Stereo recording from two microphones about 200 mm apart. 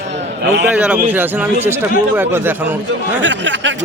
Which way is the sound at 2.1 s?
10° right (ahead or behind).